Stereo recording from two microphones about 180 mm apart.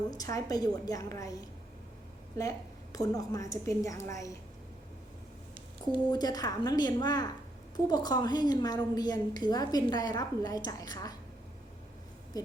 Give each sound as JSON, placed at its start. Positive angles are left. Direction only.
{"t": 0.1, "sound": "a woman's voice", "side_deg": 20}
{"t": 6.1, "sound": "a woman's voice", "side_deg": 20}